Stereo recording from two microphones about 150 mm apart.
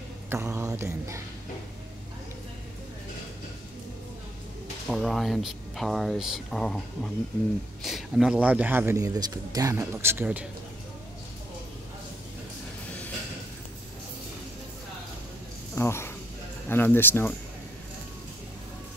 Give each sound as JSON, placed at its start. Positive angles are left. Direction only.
{"t": 0.3, "sound": "mantra", "side_deg": -15}
{"t": 4.8, "sound": "speech", "side_deg": 0}
{"t": 15.7, "sound": "speech", "side_deg": 15}